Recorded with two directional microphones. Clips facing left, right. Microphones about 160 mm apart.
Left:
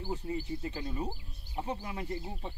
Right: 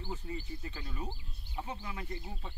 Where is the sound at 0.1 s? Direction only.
25° left (ahead or behind).